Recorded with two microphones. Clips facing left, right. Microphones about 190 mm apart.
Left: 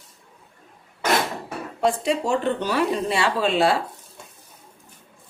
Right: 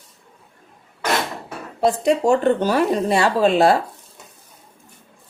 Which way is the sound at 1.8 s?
45° right (ahead or behind).